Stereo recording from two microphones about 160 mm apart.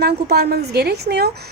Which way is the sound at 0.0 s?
90° right.